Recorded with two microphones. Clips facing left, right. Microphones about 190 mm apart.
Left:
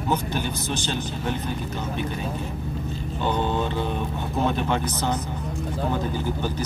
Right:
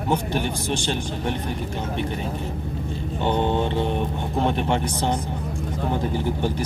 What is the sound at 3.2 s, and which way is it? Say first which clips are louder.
Speech: right 3 dB; 20° right (ahead or behind).